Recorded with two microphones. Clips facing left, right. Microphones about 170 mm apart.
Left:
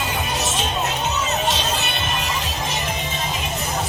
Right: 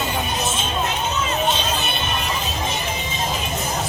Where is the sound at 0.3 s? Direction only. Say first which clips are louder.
Even; 80° left.